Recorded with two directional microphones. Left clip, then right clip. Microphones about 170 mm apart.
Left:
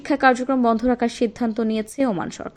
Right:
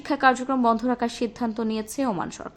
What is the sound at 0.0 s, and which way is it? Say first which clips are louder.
A woman's voice: left 3 dB; 15° left (ahead or behind).